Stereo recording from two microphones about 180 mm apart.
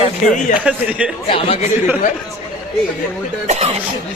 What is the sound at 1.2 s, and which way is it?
Speech, 30° left (ahead or behind).